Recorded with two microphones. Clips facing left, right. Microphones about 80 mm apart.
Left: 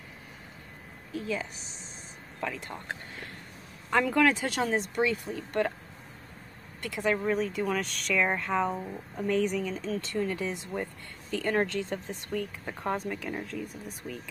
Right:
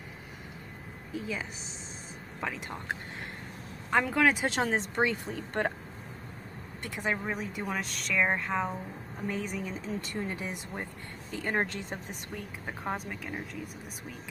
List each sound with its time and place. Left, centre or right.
1.1 s speech: centre
3.9 s speech: centre
4.7 s speech: right
6.8 s speech: right
7.8 s speech: centre; by 12.2 s right
12.6 s speech: centre